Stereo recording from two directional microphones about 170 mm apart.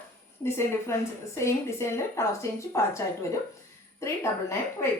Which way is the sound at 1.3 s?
15° left (ahead or behind).